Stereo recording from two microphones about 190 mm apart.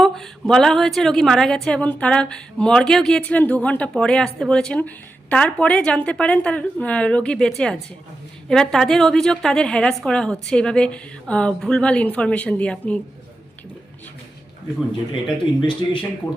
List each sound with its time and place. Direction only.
0.0 s a woman's voice: centre (ahead or behind)
15.6 s speech: 25° left (ahead or behind)